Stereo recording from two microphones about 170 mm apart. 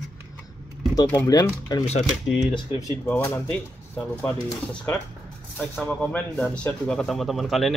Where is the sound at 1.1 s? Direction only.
20° left (ahead or behind).